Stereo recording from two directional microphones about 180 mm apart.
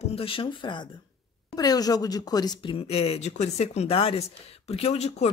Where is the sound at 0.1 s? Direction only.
30° left (ahead or behind).